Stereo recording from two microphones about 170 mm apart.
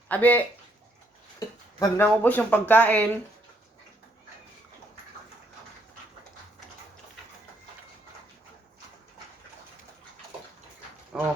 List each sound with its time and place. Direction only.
0.1 s speech: 10° left (ahead or behind)
1.4 s a sound: 20° left (ahead or behind)
2.0 s speech: 10° left (ahead or behind)
11.1 s speech: centre (ahead or behind)